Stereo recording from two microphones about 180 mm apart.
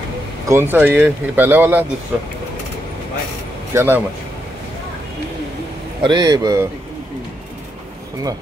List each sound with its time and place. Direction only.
0.5 s speech: 10° right (ahead or behind)
3.7 s speech: 10° right (ahead or behind)
6.0 s a man's voice: 25° right (ahead or behind)